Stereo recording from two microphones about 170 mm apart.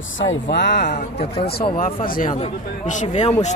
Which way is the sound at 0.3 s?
85° left.